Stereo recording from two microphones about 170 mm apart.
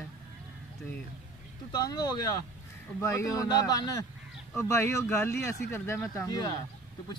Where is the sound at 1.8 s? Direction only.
20° left (ahead or behind).